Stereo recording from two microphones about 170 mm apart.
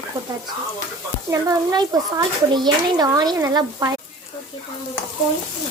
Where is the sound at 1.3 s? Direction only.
20° right (ahead or behind).